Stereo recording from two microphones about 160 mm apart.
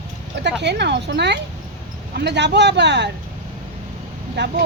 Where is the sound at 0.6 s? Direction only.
90° right.